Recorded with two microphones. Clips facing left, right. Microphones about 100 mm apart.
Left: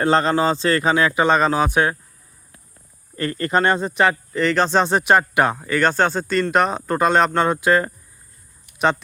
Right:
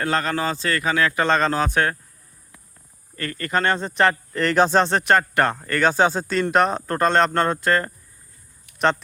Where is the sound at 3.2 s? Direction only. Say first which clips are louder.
Left 4 dB; 25° left (ahead or behind); by 4.8 s 10° right (ahead or behind).